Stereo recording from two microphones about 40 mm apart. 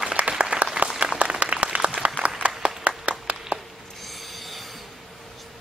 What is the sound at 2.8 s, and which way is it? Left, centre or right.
Clapping, right.